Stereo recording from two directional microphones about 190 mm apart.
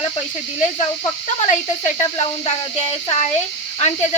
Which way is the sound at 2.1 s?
35° left (ahead or behind).